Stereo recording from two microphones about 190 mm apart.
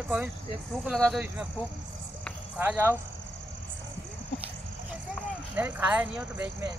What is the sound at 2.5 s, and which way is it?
Speech, 10° right (ahead or behind).